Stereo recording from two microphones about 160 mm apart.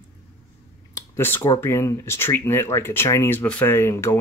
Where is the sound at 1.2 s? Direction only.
15° left (ahead or behind).